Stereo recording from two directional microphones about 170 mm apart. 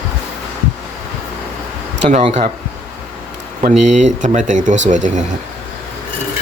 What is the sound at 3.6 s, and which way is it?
Speech, 45° right (ahead or behind).